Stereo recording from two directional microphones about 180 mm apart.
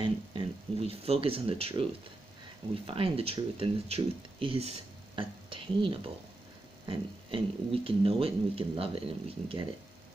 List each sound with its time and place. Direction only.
0.0 s speech: 30° right (ahead or behind)
2.9 s speech: 30° right (ahead or behind)